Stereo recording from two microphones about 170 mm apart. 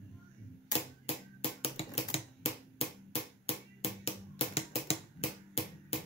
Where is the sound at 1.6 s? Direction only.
35° left (ahead or behind).